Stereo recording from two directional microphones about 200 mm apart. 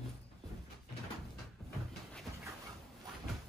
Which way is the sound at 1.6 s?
Centre (ahead or behind).